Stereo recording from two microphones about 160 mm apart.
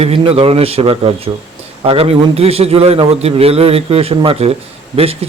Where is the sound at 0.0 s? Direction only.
35° right (ahead or behind).